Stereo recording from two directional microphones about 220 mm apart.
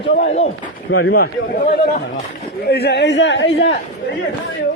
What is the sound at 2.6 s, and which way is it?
A man's voice, 45° left (ahead or behind).